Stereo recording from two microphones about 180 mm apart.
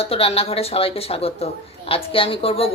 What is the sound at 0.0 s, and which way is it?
A woman's voice, 35° left (ahead or behind).